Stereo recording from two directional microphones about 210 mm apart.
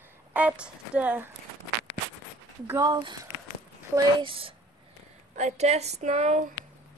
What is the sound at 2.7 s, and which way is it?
Speech, 15° right (ahead or behind).